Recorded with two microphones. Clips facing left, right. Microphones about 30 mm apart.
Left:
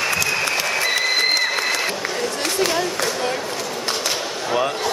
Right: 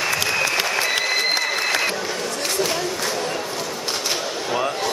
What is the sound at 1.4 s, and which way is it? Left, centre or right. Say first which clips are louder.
Applause: left 2 dB; centre.